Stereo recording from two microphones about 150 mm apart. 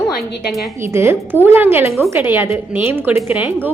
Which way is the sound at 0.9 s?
15° right (ahead or behind).